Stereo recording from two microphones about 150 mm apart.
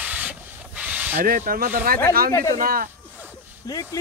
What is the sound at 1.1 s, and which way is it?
Speech, 70° right (ahead or behind).